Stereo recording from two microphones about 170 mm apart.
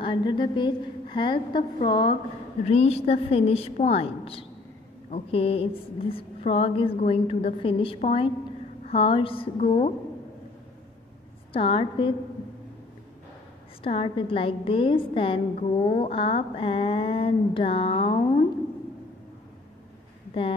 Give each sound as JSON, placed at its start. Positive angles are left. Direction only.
{"t": 0.0, "sound": "a woman's voice", "side_deg": 25}
{"t": 11.5, "sound": "a woman's voice", "side_deg": 30}
{"t": 13.8, "sound": "a woman's voice", "side_deg": 35}
{"t": 20.4, "sound": "a woman's voice", "side_deg": 35}